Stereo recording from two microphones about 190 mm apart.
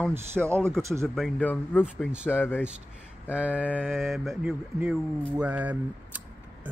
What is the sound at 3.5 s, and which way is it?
Speech, 10° left (ahead or behind).